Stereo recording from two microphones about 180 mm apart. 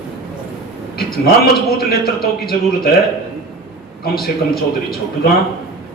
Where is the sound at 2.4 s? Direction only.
60° left (ahead or behind).